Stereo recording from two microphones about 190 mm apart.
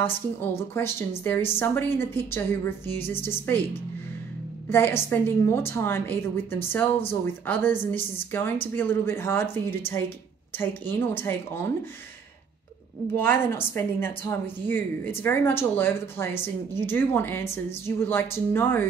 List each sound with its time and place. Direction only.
0.0 s a woman's voice: 10° left (ahead or behind)
4.6 s a woman's voice: 10° left (ahead or behind)
13.1 s a woman's voice: 10° left (ahead or behind)